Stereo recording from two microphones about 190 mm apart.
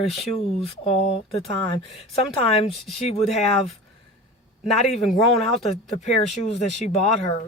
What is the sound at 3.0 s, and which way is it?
Speech, 35° left (ahead or behind).